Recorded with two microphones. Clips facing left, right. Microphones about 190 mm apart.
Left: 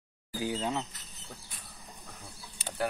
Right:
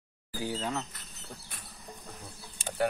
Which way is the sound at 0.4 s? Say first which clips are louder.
Left 1 dB; 20° left (ahead or behind).